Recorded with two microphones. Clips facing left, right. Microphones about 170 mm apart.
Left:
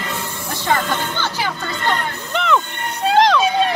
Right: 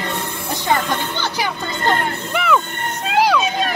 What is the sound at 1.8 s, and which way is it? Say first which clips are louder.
Speech: right 3 dB; 45° right (ahead or behind).